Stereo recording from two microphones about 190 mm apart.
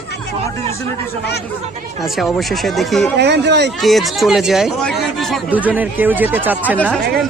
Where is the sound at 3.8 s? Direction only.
Centre (ahead or behind).